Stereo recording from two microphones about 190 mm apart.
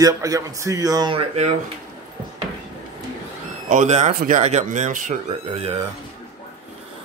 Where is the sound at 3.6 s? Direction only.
40° right (ahead or behind).